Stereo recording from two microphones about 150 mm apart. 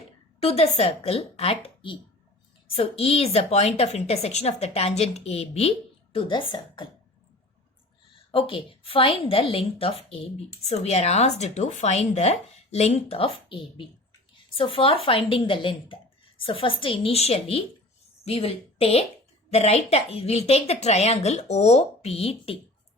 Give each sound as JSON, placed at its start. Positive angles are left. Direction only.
{"t": 0.3, "sound": "a woman's voice", "side_deg": 40}
{"t": 8.3, "sound": "a woman's voice", "side_deg": 35}